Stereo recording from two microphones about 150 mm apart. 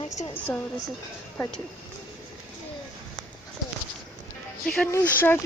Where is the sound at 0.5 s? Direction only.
10° left (ahead or behind).